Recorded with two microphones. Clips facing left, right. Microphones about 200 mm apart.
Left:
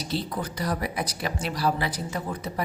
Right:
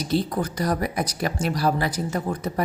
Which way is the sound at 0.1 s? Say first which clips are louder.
Right 6 dB; 45° right (ahead or behind).